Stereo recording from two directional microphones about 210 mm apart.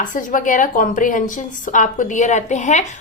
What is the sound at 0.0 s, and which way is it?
A woman's voice, 40° left (ahead or behind).